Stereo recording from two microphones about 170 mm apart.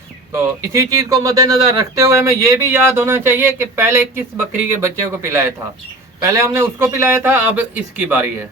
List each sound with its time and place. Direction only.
0.7 s speech: 20° right (ahead or behind)